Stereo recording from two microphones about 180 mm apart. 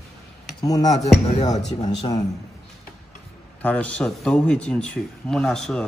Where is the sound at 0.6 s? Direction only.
20° left (ahead or behind).